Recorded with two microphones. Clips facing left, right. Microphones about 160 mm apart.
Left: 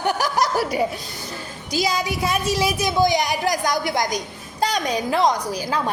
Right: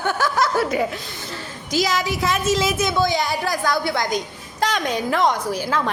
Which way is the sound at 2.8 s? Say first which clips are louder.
Left 1 dB; 15° left (ahead or behind).